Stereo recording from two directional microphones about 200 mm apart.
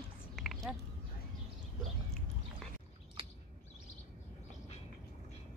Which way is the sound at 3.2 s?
25° right (ahead or behind).